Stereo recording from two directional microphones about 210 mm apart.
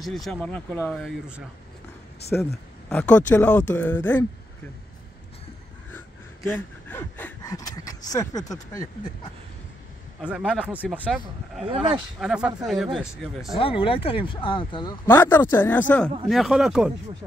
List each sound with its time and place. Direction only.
0.0 s speech: centre (ahead or behind)
5.9 s gasp: 10° left (ahead or behind)
10.2 s speech: 5° right (ahead or behind)
11.6 s speech: 25° right (ahead or behind)
12.2 s speech: 5° right (ahead or behind)
13.6 s speech: 25° left (ahead or behind)
15.0 s speech: 10° left (ahead or behind)
16.3 s speech: centre (ahead or behind)